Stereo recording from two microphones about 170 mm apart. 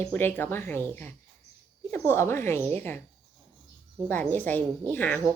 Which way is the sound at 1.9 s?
15° left (ahead or behind).